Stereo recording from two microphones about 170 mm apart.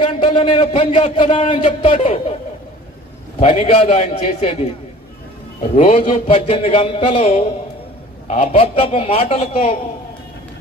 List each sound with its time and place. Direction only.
0.0 s a man's voice: 30° left (ahead or behind)
3.3 s a man's voice: 40° left (ahead or behind)